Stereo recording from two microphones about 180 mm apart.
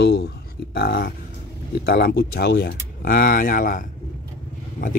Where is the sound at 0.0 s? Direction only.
65° left (ahead or behind).